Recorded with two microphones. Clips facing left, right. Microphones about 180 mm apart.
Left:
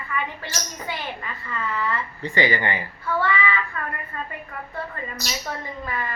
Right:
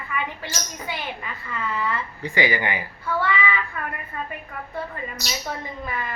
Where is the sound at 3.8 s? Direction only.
15° right (ahead or behind).